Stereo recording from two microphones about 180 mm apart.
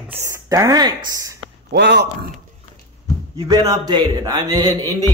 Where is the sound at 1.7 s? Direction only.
70° right (ahead or behind).